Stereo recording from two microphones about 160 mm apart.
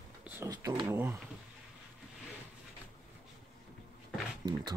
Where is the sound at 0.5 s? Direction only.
25° right (ahead or behind).